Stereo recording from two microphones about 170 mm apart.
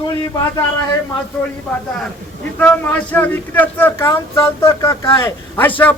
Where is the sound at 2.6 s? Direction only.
10° left (ahead or behind).